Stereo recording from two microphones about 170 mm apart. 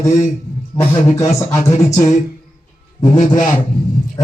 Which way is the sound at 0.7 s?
20° left (ahead or behind).